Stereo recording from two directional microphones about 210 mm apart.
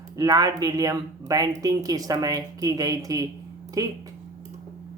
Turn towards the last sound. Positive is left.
turn(degrees=-15)  # may be behind; listen again after turning